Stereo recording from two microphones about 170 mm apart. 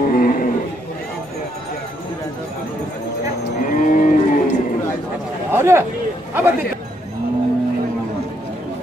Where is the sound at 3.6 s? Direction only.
50° left (ahead or behind).